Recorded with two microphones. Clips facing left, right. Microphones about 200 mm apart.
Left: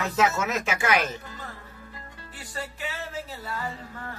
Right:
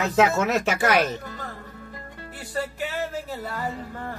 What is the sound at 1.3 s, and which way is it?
Music, 45° right (ahead or behind).